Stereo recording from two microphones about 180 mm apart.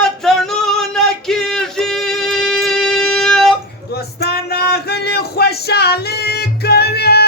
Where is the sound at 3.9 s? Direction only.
60° left (ahead or behind).